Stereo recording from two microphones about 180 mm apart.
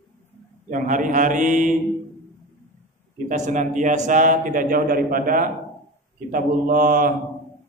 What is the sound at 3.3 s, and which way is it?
Mantra, 45° right (ahead or behind).